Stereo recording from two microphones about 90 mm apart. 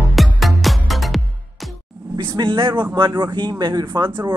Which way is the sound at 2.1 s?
65° right (ahead or behind).